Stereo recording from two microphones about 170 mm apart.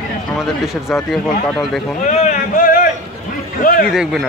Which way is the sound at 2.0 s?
45° left (ahead or behind).